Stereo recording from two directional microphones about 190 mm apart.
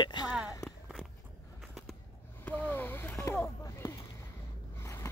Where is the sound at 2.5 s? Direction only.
10° left (ahead or behind).